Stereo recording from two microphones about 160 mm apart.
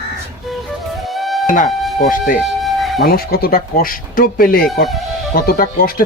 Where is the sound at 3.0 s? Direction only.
70° left (ahead or behind).